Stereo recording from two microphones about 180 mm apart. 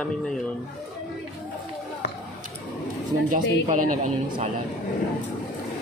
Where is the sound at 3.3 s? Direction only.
45° right (ahead or behind).